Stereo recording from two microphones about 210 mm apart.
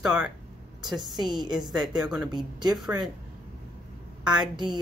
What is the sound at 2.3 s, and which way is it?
Speech, 20° right (ahead or behind).